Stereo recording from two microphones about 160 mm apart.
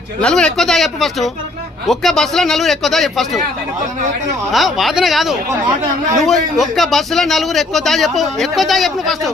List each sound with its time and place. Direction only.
0.2 s a man's voice: 5° left (ahead or behind)
4.5 s a man's voice: centre (ahead or behind)